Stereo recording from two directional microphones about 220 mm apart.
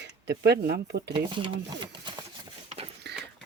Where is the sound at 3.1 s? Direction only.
50° right (ahead or behind).